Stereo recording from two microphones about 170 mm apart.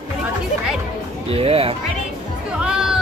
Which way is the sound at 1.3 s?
35° right (ahead or behind).